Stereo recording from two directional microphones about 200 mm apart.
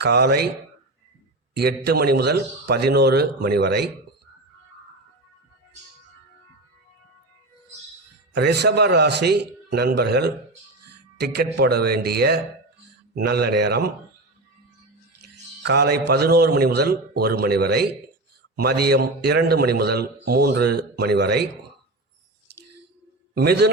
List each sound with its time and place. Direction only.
0.0 s a man's voice: 55° right (ahead or behind)
1.5 s a man's voice: 55° right (ahead or behind)
8.4 s a man's voice: 55° right (ahead or behind)
15.6 s a man's voice: 55° right (ahead or behind)
23.3 s a man's voice: 55° right (ahead or behind)